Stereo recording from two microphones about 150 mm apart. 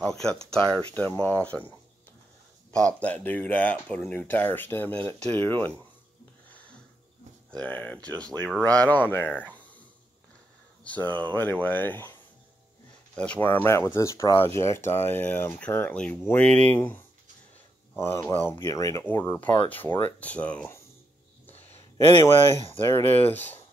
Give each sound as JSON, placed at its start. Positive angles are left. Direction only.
{"t": 0.7, "sound": "speech", "side_deg": 10}
{"t": 2.8, "sound": "speech", "side_deg": 10}
{"t": 7.6, "sound": "speech", "side_deg": 10}
{"t": 10.8, "sound": "speech", "side_deg": 10}
{"t": 22.2, "sound": "speech", "side_deg": 15}